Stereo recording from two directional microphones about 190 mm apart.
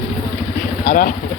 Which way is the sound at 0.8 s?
45° left (ahead or behind).